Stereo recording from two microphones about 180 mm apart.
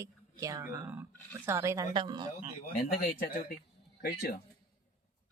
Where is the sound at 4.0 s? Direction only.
50° left (ahead or behind).